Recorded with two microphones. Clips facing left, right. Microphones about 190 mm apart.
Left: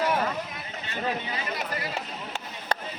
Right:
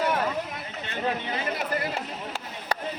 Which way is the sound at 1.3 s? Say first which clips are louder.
Right 4 dB; 50° right (ahead or behind).